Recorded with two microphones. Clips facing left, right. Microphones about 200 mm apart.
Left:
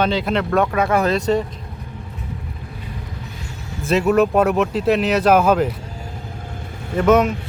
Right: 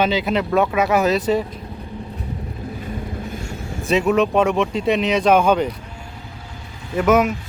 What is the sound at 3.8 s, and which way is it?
Speech, 5° left (ahead or behind).